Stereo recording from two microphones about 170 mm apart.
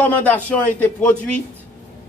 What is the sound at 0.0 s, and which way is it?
Speech, 10° left (ahead or behind).